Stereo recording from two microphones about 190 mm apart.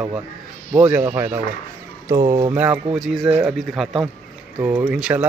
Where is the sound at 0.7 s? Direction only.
10° right (ahead or behind).